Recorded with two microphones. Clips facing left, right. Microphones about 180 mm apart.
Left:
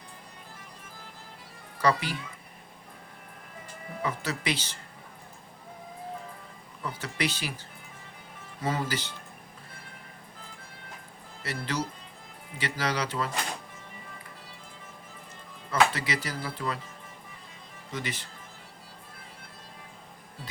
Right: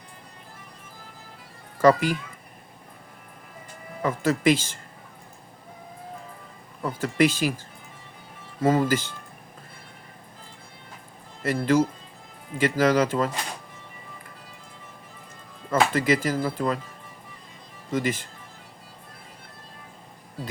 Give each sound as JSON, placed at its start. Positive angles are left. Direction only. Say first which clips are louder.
{"t": 1.8, "sound": "speech", "louder": "right 8 dB", "side_deg": -45}
{"t": 4.0, "sound": "speech", "louder": "right 10 dB", "side_deg": -50}
{"t": 6.8, "sound": "speech", "louder": "right 10 dB", "side_deg": -50}
{"t": 8.6, "sound": "speech", "louder": "right 9 dB", "side_deg": -50}
{"t": 11.4, "sound": "speech", "louder": "right 11 dB", "side_deg": -50}
{"t": 15.7, "sound": "speech", "louder": "right 5 dB", "side_deg": -45}
{"t": 17.9, "sound": "speech", "louder": "right 10 dB", "side_deg": -45}